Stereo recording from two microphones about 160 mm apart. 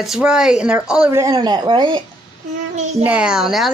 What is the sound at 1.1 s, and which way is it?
Speech, 20° right (ahead or behind).